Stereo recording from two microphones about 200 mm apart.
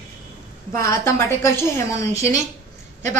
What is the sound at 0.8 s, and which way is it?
A woman's voice, 15° left (ahead or behind).